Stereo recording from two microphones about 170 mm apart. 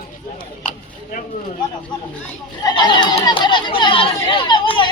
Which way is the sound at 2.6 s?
25° left (ahead or behind).